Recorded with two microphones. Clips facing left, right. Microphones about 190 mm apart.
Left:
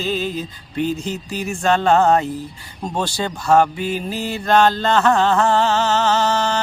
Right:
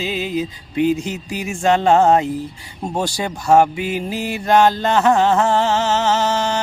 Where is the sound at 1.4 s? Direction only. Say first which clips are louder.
Right 2 dB; 15° right (ahead or behind).